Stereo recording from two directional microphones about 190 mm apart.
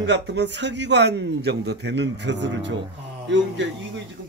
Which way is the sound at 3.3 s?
70° right (ahead or behind).